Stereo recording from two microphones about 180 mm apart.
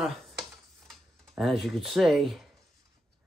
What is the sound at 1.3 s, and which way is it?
Speech, centre (ahead or behind).